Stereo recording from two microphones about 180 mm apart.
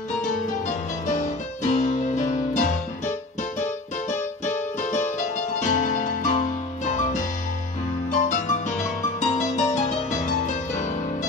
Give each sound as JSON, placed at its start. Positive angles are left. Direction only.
{"t": 0.2, "sound": "music", "side_deg": 40}